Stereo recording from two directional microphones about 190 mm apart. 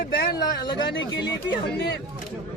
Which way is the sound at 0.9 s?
65° left (ahead or behind).